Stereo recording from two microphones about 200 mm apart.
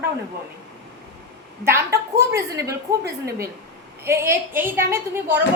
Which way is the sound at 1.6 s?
15° right (ahead or behind).